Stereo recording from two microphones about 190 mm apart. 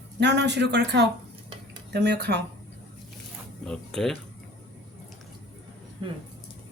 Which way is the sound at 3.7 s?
5° left (ahead or behind).